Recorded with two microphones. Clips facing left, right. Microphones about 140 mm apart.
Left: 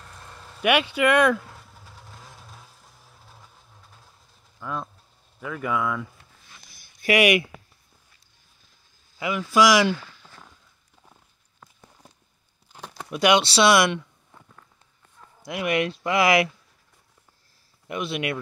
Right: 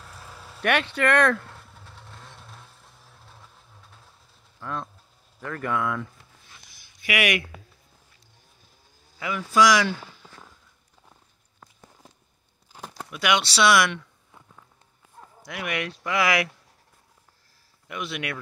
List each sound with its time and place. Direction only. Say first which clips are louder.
0.0 s vehicle: right 1 dB; 5° right (ahead or behind)
4.6 s speech: left 1 dB; 5° left (ahead or behind)
6.7 s a sound: left 7 dB; 45° left (ahead or behind)
7.2 s speech: left 6 dB; 15° left (ahead or behind)
9.2 s speech: left 1 dB; 10° left (ahead or behind)
10.2 s a sound: right 1 dB; 10° right (ahead or behind)
12.7 s a sound: even; centre (ahead or behind)
13.1 s speech: left 5 dB; 30° left (ahead or behind)
15.4 s speech: left 6 dB; 25° left (ahead or behind)
17.8 s speech: left 4 dB; 25° left (ahead or behind)